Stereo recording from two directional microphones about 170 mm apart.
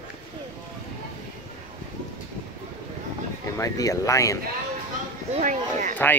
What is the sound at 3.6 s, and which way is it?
Speech, 20° left (ahead or behind).